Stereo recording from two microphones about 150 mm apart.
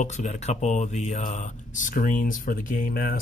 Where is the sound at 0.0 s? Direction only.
50° left (ahead or behind).